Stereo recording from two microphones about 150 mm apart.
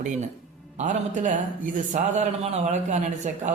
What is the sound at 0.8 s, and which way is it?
A man's voice, 55° right (ahead or behind).